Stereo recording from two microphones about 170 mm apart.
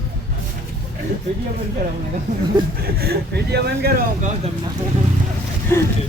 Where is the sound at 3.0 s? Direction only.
70° right (ahead or behind).